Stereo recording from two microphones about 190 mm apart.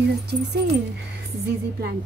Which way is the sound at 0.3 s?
60° right (ahead or behind).